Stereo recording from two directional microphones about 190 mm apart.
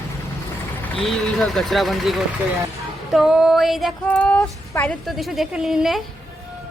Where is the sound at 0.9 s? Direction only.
5° left (ahead or behind).